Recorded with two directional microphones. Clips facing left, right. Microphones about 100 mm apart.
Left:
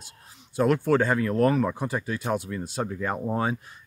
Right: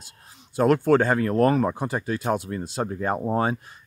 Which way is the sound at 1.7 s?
30° right (ahead or behind).